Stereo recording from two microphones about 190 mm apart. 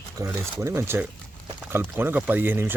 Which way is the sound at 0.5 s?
15° right (ahead or behind).